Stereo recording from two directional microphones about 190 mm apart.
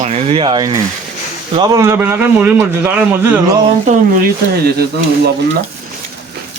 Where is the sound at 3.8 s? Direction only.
45° right (ahead or behind).